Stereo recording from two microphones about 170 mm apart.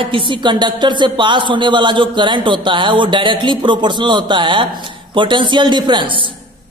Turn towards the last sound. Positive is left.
turn(degrees=-30)  # may be behind; listen again after turning